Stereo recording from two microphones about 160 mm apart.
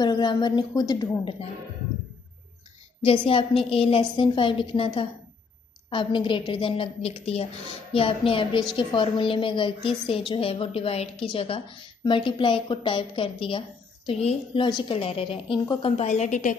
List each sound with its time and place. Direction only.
0.0 s a woman's voice: 25° left (ahead or behind)
3.0 s a woman's voice: 35° left (ahead or behind)
16.1 s a woman's voice: 50° left (ahead or behind)